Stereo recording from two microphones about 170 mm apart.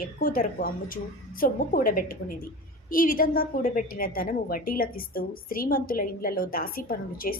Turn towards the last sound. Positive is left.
turn(degrees=60)  # may be behind; listen again after turning